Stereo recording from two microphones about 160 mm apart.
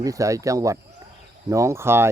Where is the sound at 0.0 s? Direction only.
20° right (ahead or behind).